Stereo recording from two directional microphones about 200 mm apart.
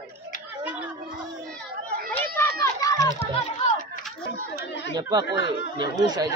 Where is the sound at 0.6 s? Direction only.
5° right (ahead or behind).